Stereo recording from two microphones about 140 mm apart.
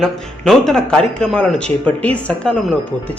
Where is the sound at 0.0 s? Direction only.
Centre (ahead or behind).